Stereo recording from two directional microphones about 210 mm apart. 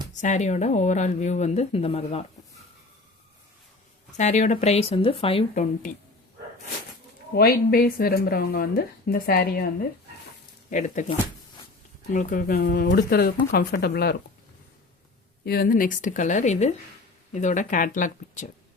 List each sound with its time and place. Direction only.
0.1 s speech: 35° left (ahead or behind)
4.2 s speech: 35° left (ahead or behind)
7.3 s speech: 45° left (ahead or behind)
10.7 s speech: 35° left (ahead or behind)
12.1 s speech: 40° left (ahead or behind)
15.4 s speech: 45° left (ahead or behind)